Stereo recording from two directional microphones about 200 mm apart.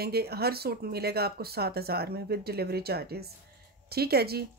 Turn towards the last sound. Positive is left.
turn(degrees=-50)  # may be behind; listen again after turning